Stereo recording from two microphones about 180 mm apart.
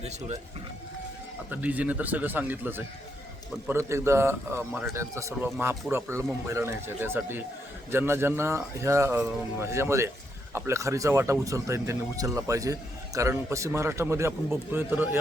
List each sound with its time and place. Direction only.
1.5 s speech: 10° right (ahead or behind)